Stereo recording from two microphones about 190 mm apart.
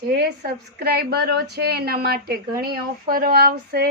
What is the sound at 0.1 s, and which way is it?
A woman's voice, 60° right (ahead or behind).